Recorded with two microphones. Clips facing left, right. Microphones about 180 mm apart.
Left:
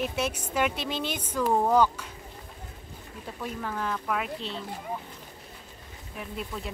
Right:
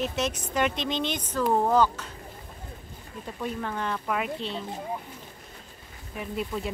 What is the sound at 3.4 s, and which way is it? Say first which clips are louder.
Speech: right 2 dB; 5° left (ahead or behind).